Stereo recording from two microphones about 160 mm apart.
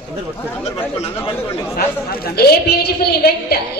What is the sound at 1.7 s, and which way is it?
A woman's voice, 75° left (ahead or behind).